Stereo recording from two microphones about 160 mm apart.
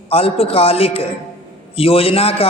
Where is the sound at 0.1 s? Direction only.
35° left (ahead or behind).